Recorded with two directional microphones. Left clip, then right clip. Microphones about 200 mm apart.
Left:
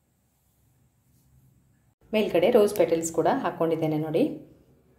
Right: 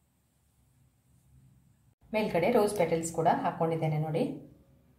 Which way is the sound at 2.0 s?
40° left (ahead or behind).